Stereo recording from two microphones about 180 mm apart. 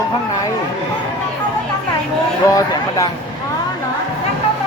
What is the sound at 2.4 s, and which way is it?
Speech, 20° left (ahead or behind).